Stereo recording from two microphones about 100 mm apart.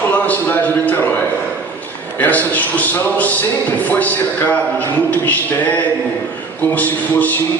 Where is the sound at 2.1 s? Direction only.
15° left (ahead or behind).